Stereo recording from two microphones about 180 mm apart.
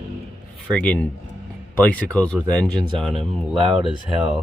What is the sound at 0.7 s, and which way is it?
Speech, 5° left (ahead or behind).